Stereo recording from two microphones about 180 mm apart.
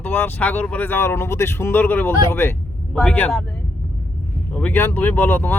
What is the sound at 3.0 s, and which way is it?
Speech, 5° left (ahead or behind).